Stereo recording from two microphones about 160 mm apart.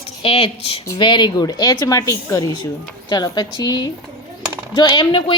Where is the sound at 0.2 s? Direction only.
35° left (ahead or behind).